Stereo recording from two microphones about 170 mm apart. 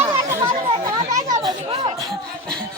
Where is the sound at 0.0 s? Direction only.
15° right (ahead or behind).